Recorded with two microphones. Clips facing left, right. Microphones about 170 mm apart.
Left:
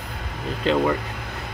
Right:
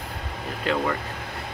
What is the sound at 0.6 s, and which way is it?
Speech, 25° left (ahead or behind).